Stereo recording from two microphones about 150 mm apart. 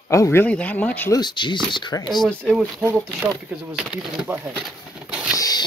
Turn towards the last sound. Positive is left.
turn(degrees=25)  # may be behind; listen again after turning